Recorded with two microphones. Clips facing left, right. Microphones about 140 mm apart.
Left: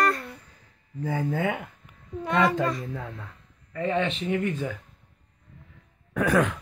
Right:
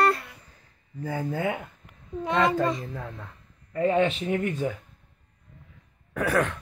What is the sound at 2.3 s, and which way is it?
Child singing, centre (ahead or behind).